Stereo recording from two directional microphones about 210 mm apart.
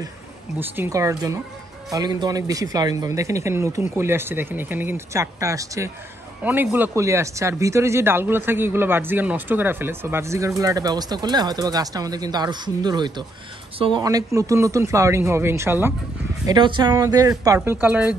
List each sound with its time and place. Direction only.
0.6 s speech: 10° right (ahead or behind)